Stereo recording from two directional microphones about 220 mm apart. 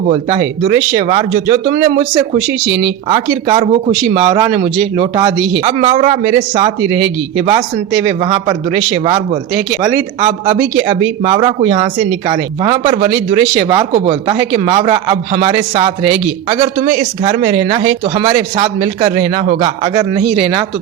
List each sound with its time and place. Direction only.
0.0 s a man's voice: 25° right (ahead or behind)
10.4 s a man's voice: 25° right (ahead or behind)